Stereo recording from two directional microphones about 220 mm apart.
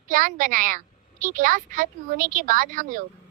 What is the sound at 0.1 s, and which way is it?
Speech, 40° right (ahead or behind).